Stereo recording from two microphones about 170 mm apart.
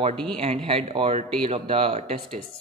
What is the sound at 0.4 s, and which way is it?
A man's voice, 35° right (ahead or behind).